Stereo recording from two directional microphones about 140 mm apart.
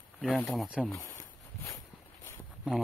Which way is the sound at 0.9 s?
25° left (ahead or behind).